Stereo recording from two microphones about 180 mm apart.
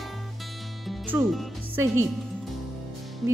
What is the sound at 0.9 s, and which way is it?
Music, 5° right (ahead or behind).